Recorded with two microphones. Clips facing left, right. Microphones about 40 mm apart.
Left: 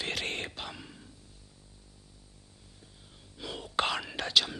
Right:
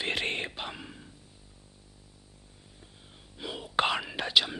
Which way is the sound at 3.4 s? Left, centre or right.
Centre.